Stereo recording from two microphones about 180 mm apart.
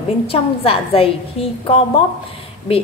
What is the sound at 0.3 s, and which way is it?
A woman's voice, 30° left (ahead or behind).